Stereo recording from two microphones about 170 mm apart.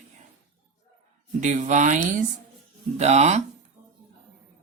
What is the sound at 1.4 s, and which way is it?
Speech, 45° right (ahead or behind).